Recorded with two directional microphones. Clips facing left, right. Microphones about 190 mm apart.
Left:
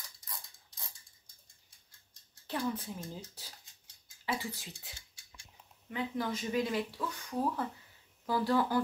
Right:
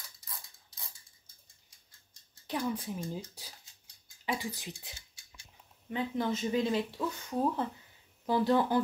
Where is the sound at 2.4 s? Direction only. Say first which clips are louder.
Right 1 dB; 15° right (ahead or behind).